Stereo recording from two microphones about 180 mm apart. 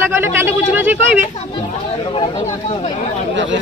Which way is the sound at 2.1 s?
30° left (ahead or behind).